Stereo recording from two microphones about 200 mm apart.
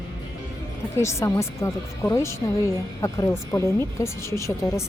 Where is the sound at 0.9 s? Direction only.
15° left (ahead or behind).